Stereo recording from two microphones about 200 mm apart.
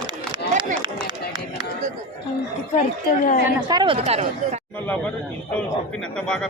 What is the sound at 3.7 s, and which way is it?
Speech, 25° right (ahead or behind).